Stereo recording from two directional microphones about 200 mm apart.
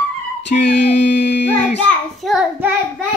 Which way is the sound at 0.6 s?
60° left (ahead or behind).